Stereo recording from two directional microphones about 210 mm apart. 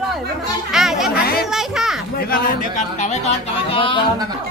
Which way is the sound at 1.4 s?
Centre (ahead or behind).